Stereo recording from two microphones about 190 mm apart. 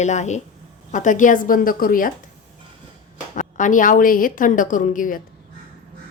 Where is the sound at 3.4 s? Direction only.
45° left (ahead or behind).